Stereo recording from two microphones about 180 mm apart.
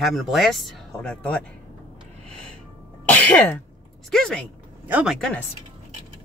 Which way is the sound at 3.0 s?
10° left (ahead or behind).